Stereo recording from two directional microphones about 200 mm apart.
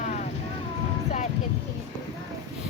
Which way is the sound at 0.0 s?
35° left (ahead or behind).